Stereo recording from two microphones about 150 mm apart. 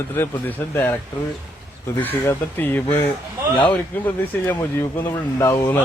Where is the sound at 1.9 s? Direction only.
15° left (ahead or behind).